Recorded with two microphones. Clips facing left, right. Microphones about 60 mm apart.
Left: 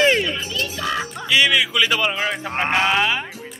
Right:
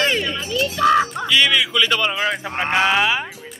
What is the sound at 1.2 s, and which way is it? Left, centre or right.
Speech, centre.